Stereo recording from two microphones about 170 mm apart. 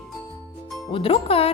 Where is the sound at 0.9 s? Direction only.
35° left (ahead or behind).